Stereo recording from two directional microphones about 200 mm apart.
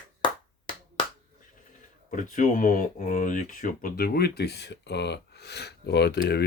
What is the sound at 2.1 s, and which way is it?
Speech, 40° left (ahead or behind).